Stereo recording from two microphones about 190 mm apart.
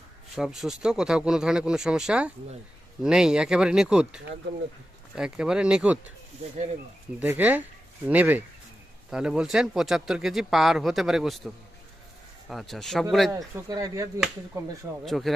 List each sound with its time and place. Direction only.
0.3 s speech: centre (ahead or behind)
7.2 s speech: 10° right (ahead or behind)
13.3 s speech: 20° right (ahead or behind)
15.0 s speech: centre (ahead or behind)